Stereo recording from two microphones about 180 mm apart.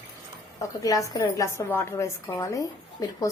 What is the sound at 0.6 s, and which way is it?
A woman's voice, 20° left (ahead or behind).